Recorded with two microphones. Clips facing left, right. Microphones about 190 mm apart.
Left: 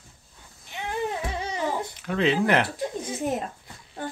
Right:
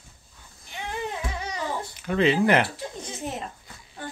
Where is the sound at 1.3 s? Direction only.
25° left (ahead or behind).